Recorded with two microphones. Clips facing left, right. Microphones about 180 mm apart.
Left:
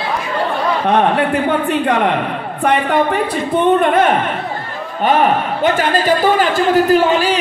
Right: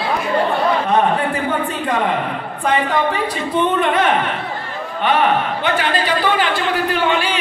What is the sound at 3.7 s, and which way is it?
A man's voice, 45° left (ahead or behind).